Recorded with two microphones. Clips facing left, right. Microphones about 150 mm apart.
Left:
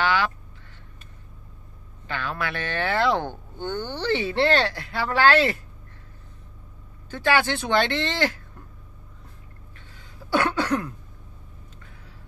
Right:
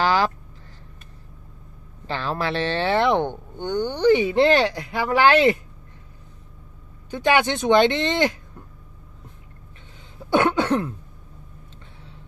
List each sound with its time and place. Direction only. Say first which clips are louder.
0.0 s a sound: right 3 dB; 35° right (ahead or behind)
2.0 s speech: right 4 dB; 30° right (ahead or behind)
7.1 s speech: right 3 dB; 20° right (ahead or behind)
10.3 s cough: right 4 dB; 20° right (ahead or behind)